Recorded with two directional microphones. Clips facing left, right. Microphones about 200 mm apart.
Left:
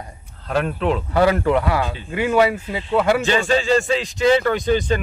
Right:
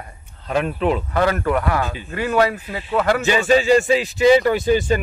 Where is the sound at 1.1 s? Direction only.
15° left (ahead or behind).